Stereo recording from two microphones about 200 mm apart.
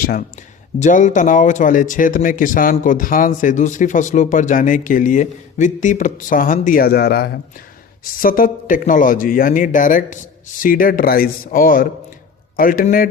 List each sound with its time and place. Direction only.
0.0 s speech: 45° left (ahead or behind)